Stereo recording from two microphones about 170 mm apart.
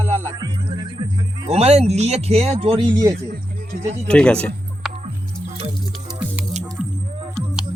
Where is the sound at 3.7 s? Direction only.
60° right (ahead or behind).